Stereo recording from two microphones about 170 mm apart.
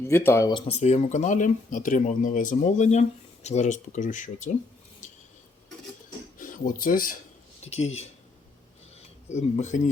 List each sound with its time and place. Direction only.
0.0 s speech: 15° left (ahead or behind)
0.5 s speech: 40° left (ahead or behind)
6.4 s speech: 50° left (ahead or behind)
7.6 s speech: 40° left (ahead or behind)
9.3 s speech: 45° left (ahead or behind)